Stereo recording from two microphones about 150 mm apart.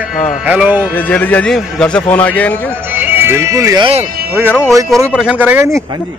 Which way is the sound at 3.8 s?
45° right (ahead or behind).